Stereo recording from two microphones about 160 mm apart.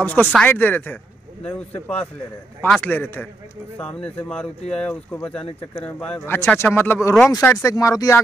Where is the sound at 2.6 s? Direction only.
5° left (ahead or behind).